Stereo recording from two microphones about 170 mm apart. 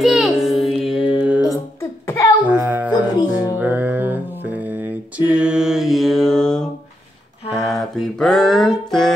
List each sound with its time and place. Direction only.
0.0 s music: centre (ahead or behind)
1.5 s a sound: 15° left (ahead or behind)
2.4 s music: 10° right (ahead or behind)